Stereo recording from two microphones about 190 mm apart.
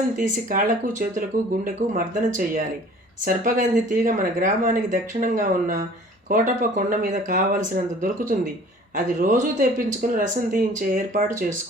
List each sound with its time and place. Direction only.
0.2 s speech: 45° right (ahead or behind)